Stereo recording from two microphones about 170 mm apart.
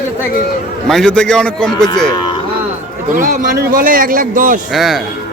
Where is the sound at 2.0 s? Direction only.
25° left (ahead or behind).